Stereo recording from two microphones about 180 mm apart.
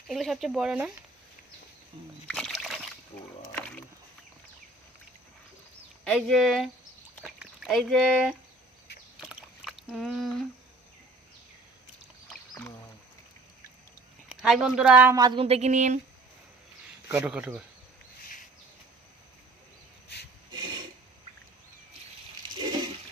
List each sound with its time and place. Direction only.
0.1 s speech: centre (ahead or behind)
2.2 s speech: 5° left (ahead or behind)
6.1 s speech: 5° left (ahead or behind)
9.2 s a sound: centre (ahead or behind)
12.3 s rowboat: 10° left (ahead or behind)
14.3 s speech: 5° right (ahead or behind)
15.4 s speech: 35° right (ahead or behind)
17.1 s speech: 5° right (ahead or behind)
20.5 s rub: 25° right (ahead or behind)